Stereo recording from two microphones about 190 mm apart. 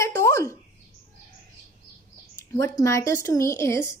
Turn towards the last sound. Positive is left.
turn(degrees=15)  # may be behind; listen again after turning